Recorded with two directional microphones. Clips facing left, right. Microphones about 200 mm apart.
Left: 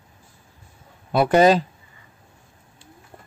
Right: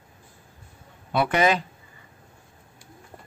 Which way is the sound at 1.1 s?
35° left (ahead or behind).